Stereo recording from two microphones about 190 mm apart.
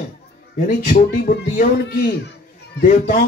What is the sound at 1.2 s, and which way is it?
Speech, 55° left (ahead or behind).